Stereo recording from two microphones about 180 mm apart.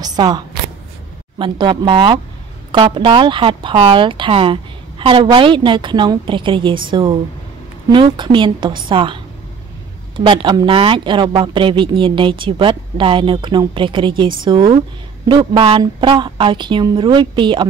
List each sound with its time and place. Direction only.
0.0 s speech: 20° right (ahead or behind)
1.4 s speech: 25° right (ahead or behind)